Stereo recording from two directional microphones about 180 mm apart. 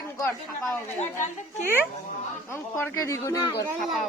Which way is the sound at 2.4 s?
15° left (ahead or behind).